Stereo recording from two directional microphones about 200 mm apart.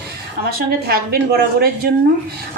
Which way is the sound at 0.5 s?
50° right (ahead or behind).